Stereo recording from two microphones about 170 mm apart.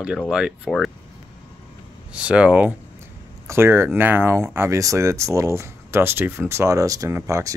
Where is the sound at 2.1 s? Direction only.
5° right (ahead or behind).